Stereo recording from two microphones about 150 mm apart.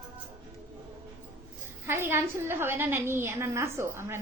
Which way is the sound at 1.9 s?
15° right (ahead or behind).